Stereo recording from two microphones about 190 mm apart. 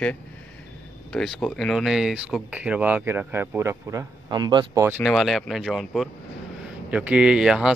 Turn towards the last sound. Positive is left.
turn(degrees=-5)  # may be behind; listen again after turning